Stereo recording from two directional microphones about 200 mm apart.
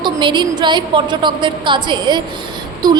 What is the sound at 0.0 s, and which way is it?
A woman's voice, 25° right (ahead or behind).